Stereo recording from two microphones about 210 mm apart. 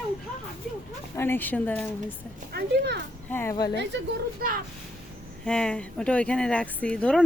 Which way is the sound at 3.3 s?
10° left (ahead or behind).